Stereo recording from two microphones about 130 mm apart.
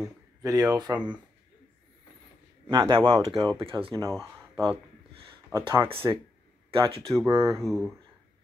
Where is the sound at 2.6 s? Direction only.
35° right (ahead or behind).